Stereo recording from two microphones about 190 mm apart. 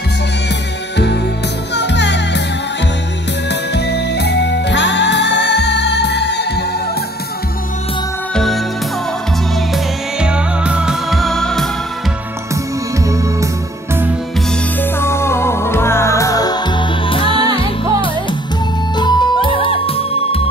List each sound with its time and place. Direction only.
1.8 s music: 65° left (ahead or behind)
3.7 s music: 60° left (ahead or behind)
10.2 s music: 5° right (ahead or behind)
13.0 s music: 15° right (ahead or behind)
14.8 s music: 15° left (ahead or behind); by 17.5 s 30° left (ahead or behind)
18.9 s music: 25° left (ahead or behind)